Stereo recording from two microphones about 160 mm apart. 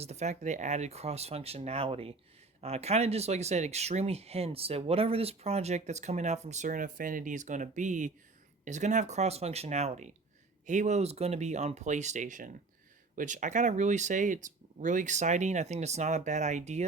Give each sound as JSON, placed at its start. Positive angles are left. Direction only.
{"t": 0.0, "sound": "speech", "side_deg": -45}